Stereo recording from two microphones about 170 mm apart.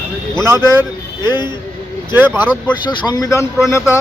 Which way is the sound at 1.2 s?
25° left (ahead or behind).